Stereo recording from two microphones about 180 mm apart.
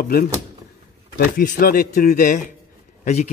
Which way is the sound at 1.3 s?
55° left (ahead or behind).